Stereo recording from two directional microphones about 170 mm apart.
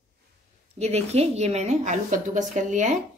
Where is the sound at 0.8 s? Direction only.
40° right (ahead or behind).